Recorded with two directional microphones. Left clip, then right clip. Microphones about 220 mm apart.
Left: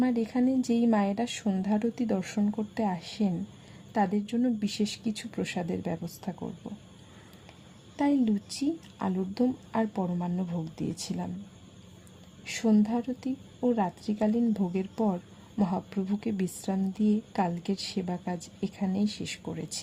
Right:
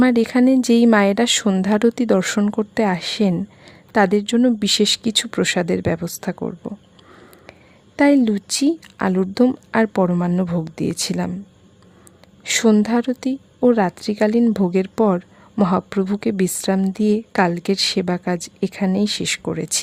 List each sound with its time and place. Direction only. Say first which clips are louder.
0.0 s a woman's voice: right 12 dB; 40° right (ahead or behind)
7.9 s a woman's voice: right 12 dB; 45° right (ahead or behind)
12.4 s a woman's voice: right 12 dB; 45° right (ahead or behind)